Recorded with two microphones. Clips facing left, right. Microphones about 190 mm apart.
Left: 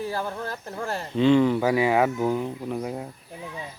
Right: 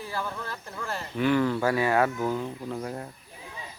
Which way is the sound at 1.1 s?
20° left (ahead or behind).